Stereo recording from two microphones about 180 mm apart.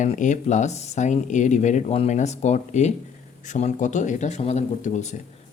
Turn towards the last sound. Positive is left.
turn(degrees=40)  # may be behind; listen again after turning